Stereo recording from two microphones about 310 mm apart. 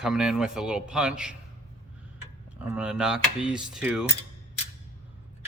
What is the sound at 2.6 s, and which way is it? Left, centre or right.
A man's voice, centre.